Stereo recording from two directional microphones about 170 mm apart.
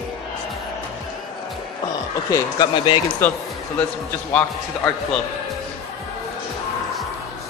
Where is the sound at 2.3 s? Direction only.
25° left (ahead or behind).